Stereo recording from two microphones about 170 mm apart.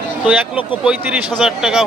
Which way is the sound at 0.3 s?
5° right (ahead or behind).